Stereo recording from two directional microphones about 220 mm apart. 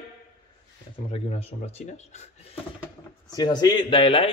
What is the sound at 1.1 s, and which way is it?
Speech, 30° left (ahead or behind).